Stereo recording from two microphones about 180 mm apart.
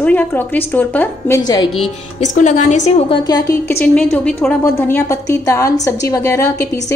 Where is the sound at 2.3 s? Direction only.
40° left (ahead or behind).